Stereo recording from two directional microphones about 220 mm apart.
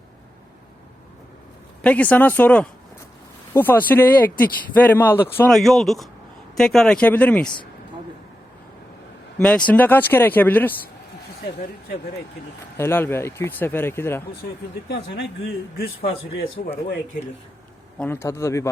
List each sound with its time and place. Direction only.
1.8 s a man's voice: 5° left (ahead or behind)
9.6 s speech: 5° left (ahead or behind)
12.7 s speech: 10° left (ahead or behind)
14.8 s speech: 50° left (ahead or behind)
16.6 s speech: 45° left (ahead or behind)
17.9 s speech: 10° left (ahead or behind)